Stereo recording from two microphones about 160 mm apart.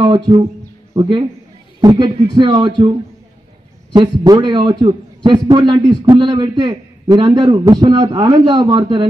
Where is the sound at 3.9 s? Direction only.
25° right (ahead or behind).